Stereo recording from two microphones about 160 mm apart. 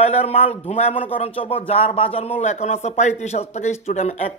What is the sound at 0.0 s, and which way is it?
Speech, 40° left (ahead or behind).